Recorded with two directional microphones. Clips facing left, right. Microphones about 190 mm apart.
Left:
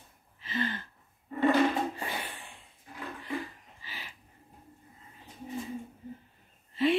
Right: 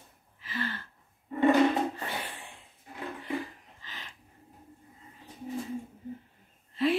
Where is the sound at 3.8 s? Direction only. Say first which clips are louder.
Left 1 dB; 10° left (ahead or behind).